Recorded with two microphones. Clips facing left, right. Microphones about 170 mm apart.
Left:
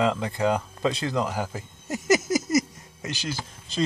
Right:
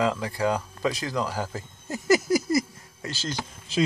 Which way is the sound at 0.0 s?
25° left (ahead or behind).